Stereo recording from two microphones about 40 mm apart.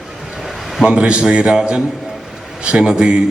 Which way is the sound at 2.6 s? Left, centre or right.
Right.